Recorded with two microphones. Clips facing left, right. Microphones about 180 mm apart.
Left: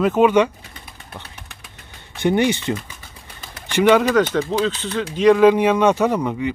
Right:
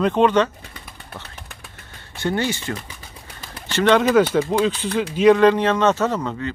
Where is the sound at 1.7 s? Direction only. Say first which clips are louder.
Even; 15° left (ahead or behind).